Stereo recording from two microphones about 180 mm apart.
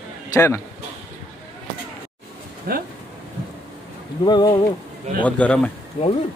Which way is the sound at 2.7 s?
55° right (ahead or behind).